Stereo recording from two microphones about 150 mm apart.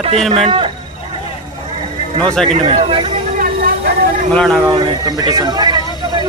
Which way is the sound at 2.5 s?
40° right (ahead or behind).